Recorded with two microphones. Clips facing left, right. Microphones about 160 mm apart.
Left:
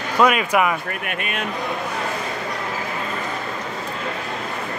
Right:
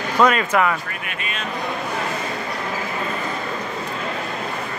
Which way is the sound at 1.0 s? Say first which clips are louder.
Left 3 dB; 55° left (ahead or behind).